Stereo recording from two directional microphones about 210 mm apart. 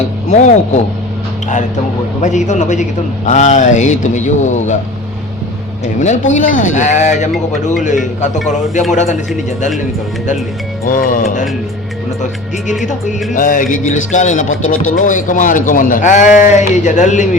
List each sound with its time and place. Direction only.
0.3 s speech: 35° left (ahead or behind)
2.2 s speech: 35° left (ahead or behind)
5.8 s speech: 35° left (ahead or behind)
10.8 s speech: 40° left (ahead or behind)
12.8 s speech: 35° left (ahead or behind)